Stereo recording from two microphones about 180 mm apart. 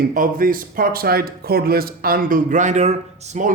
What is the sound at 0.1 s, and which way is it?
Speech, 50° right (ahead or behind).